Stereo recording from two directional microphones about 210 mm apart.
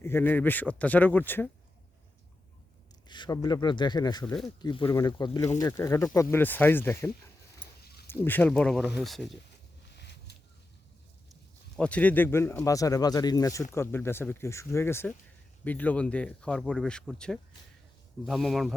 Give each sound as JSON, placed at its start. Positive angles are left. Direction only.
{"t": 0.0, "sound": "speech", "side_deg": 10}
{"t": 3.1, "sound": "speech", "side_deg": 20}
{"t": 9.9, "sound": "a sound", "side_deg": 50}
{"t": 11.8, "sound": "speech", "side_deg": 5}